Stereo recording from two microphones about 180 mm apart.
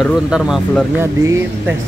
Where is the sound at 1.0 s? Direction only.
10° right (ahead or behind).